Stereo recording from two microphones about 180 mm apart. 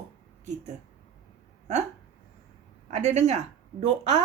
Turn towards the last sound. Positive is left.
turn(degrees=-40)  # may be behind; listen again after turning